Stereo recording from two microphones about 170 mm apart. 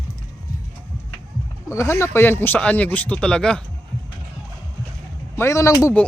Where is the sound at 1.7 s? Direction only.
15° left (ahead or behind).